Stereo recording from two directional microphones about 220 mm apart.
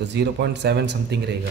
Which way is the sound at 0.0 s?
50° right (ahead or behind).